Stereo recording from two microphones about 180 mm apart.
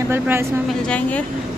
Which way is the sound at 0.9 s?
5° left (ahead or behind).